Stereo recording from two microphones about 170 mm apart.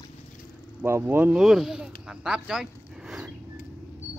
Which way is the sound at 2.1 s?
5° right (ahead or behind).